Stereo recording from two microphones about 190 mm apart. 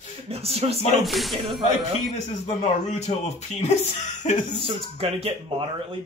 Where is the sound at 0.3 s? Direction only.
30° right (ahead or behind).